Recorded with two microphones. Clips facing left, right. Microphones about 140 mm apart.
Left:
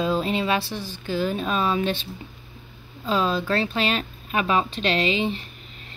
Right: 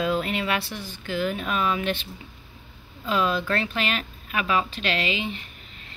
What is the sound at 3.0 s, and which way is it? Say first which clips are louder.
Speech: left 1 dB; 25° left (ahead or behind).